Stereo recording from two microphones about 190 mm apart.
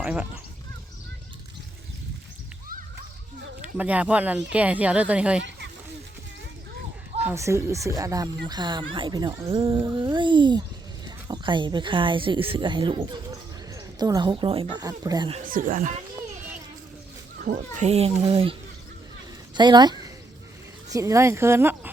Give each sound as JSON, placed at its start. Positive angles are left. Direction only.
{"t": 0.0, "sound": "speech", "side_deg": -5}
{"t": 3.6, "sound": "speech", "side_deg": -10}
{"t": 5.4, "sound": "a sound", "side_deg": -70}
{"t": 7.2, "sound": "speech", "side_deg": -15}
{"t": 15.4, "sound": "speech", "side_deg": -45}
{"t": 17.3, "sound": "speech", "side_deg": -50}
{"t": 17.8, "sound": "a child's voice", "side_deg": -35}
{"t": 19.5, "sound": "speech", "side_deg": -20}